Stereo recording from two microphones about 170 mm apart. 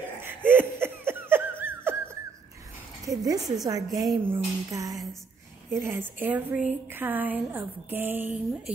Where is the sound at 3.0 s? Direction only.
20° right (ahead or behind).